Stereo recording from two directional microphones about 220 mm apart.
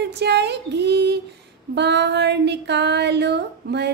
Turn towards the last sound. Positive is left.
turn(degrees=-50)  # may be behind; listen again after turning